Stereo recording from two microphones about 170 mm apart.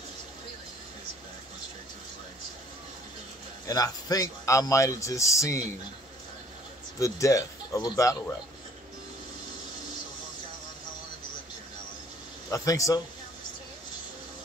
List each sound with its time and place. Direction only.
3.6 s speech: 20° left (ahead or behind)
7.0 s speech: 20° left (ahead or behind)
12.4 s speech: 20° left (ahead or behind)